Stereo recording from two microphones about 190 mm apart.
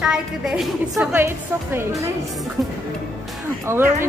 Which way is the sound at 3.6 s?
15° right (ahead or behind).